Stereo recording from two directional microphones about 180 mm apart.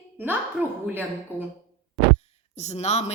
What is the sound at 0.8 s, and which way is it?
Speech, 10° right (ahead or behind).